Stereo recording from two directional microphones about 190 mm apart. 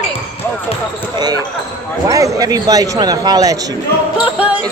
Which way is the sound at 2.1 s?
20° right (ahead or behind).